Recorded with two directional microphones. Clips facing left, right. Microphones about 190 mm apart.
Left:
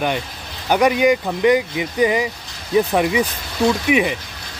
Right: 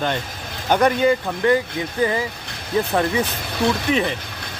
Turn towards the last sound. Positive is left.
turn(degrees=10)  # may be behind; listen again after turning